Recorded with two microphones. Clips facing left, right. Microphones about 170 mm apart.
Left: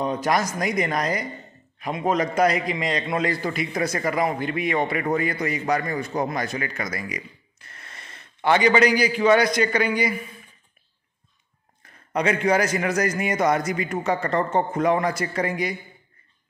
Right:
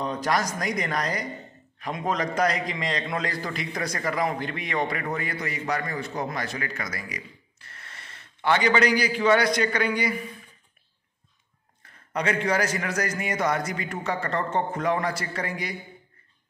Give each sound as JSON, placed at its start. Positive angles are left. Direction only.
{"t": 0.0, "sound": "a man's voice", "side_deg": 10}
{"t": 5.0, "sound": "a man's voice", "side_deg": 20}
{"t": 12.1, "sound": "a man's voice", "side_deg": 15}